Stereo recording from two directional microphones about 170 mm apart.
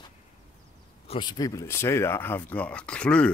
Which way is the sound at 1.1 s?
25° left (ahead or behind).